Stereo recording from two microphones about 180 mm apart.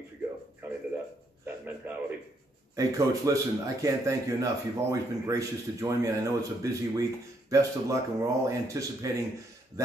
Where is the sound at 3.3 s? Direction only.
20° right (ahead or behind).